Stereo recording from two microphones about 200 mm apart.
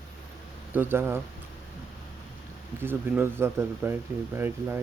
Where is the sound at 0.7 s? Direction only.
10° right (ahead or behind).